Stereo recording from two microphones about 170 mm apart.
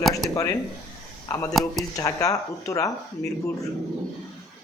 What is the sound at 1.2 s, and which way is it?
A man's voice, 20° left (ahead or behind).